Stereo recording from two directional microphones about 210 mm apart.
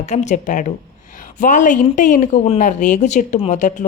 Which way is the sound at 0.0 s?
35° left (ahead or behind).